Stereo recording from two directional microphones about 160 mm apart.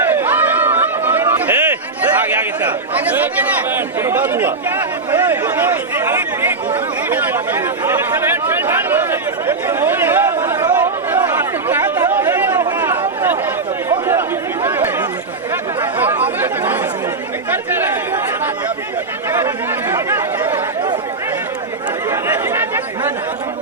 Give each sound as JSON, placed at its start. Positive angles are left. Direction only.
{"t": 0.1, "sound": "chatter", "side_deg": -15}
{"t": 3.8, "sound": "speech", "side_deg": -15}
{"t": 7.1, "sound": "chatter", "side_deg": -15}
{"t": 17.5, "sound": "speech", "side_deg": -15}
{"t": 19.9, "sound": "speech", "side_deg": -15}
{"t": 22.1, "sound": "chatter", "side_deg": -15}